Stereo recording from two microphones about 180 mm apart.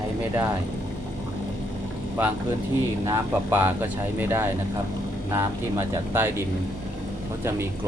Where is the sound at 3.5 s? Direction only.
10° right (ahead or behind).